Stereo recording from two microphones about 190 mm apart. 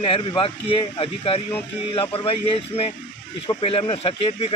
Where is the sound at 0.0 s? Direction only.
25° left (ahead or behind).